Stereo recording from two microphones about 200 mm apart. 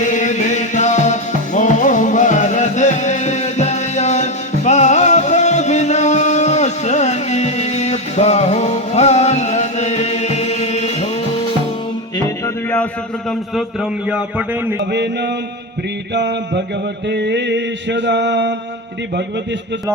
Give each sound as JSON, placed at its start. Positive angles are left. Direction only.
{"t": 0.0, "sound": "music", "side_deg": 35}
{"t": 14.1, "sound": "a man's voice", "side_deg": -5}
{"t": 16.1, "sound": "mantra", "side_deg": -60}